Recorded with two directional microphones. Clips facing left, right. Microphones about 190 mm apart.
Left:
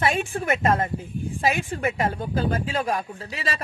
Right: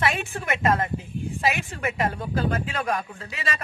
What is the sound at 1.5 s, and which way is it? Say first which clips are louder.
A woman's voice: left 3 dB; 30° left (ahead or behind).